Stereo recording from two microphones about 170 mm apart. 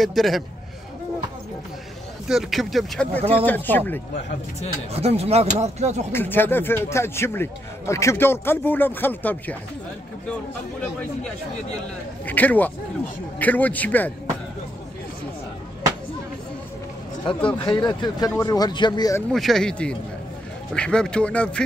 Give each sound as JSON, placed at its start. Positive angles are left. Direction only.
{"t": 0.0, "sound": "speech", "side_deg": 0}
{"t": 2.2, "sound": "speech", "side_deg": 0}
{"t": 3.2, "sound": "speech", "side_deg": -35}
{"t": 3.4, "sound": "a man's voice", "side_deg": 10}
{"t": 4.9, "sound": "speech", "side_deg": -35}
{"t": 6.1, "sound": "a man's voice", "side_deg": 10}
{"t": 12.3, "sound": "a man's voice", "side_deg": 10}
{"t": 17.6, "sound": "speech", "side_deg": 25}
{"t": 19.3, "sound": "speech", "side_deg": 0}